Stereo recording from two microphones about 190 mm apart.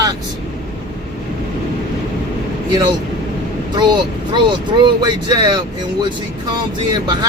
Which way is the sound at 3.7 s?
25° right (ahead or behind).